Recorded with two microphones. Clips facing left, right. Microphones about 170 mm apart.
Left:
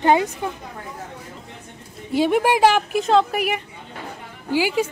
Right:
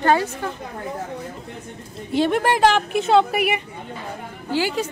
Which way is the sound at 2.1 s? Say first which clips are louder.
Left 1 dB; 10° left (ahead or behind).